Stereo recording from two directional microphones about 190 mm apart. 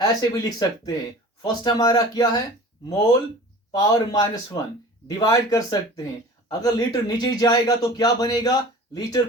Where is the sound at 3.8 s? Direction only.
20° left (ahead or behind).